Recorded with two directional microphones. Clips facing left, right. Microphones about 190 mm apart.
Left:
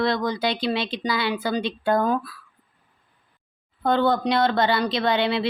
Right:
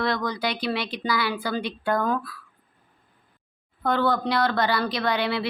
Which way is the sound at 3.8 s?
25° left (ahead or behind).